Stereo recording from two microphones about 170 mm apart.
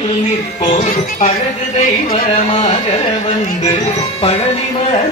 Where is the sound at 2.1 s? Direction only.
30° left (ahead or behind).